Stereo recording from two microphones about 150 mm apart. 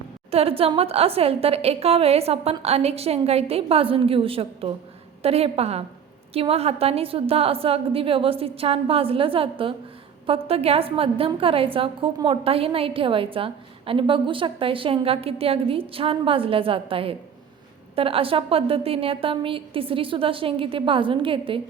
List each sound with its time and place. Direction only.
0.3 s a woman's voice: 40° right (ahead or behind)